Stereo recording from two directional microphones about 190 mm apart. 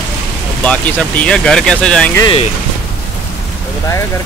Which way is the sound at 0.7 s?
10° left (ahead or behind).